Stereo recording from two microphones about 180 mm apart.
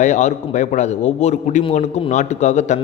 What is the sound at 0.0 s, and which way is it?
Speech, 40° left (ahead or behind).